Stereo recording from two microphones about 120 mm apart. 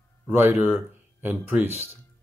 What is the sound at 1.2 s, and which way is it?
Speech, 15° right (ahead or behind).